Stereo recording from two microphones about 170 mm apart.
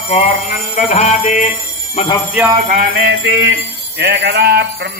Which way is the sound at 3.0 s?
90° right.